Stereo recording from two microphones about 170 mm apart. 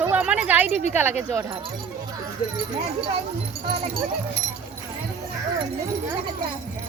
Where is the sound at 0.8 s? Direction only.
40° left (ahead or behind).